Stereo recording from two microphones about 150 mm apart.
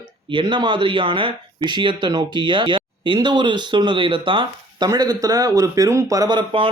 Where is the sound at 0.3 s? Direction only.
35° right (ahead or behind).